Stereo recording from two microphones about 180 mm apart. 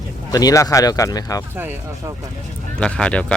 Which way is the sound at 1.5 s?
10° right (ahead or behind).